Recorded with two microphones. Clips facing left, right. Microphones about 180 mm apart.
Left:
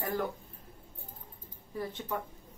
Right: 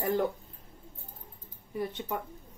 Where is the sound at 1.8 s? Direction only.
20° right (ahead or behind).